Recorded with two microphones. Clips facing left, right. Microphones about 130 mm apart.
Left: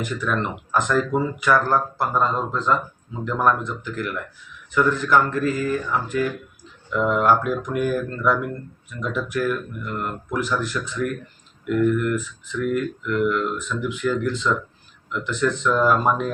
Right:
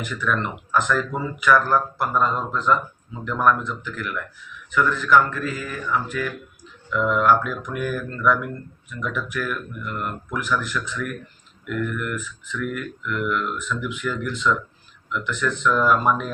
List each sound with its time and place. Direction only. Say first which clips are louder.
0.0 s speech: left 1 dB; 20° left (ahead or behind)